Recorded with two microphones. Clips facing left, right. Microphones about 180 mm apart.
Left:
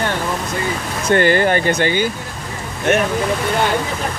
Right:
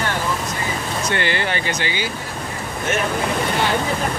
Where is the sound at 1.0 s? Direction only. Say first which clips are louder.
Left 10 dB; 45° left (ahead or behind).